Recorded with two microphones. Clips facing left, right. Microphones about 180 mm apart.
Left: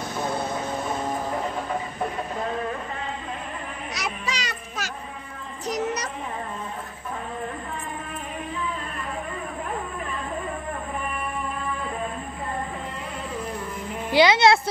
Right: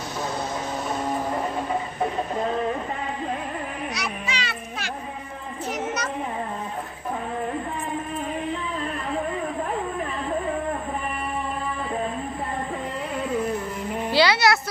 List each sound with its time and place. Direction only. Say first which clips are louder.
4.3 s child singing: right 1 dB; 40° left (ahead or behind)
5.7 s children playing: left 2 dB; 35° left (ahead or behind)
14.1 s a child's voice: left 3 dB; 20° left (ahead or behind)